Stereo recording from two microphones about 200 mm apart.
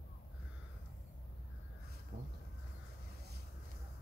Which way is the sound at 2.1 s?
50° right (ahead or behind).